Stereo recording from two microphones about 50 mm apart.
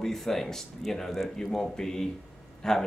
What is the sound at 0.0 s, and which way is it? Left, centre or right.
Speech, centre.